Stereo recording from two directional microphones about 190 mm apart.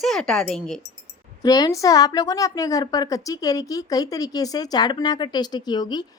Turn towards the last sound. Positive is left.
turn(degrees=20)  # may be behind; listen again after turning